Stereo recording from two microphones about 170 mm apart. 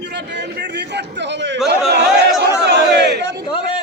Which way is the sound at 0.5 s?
85° right.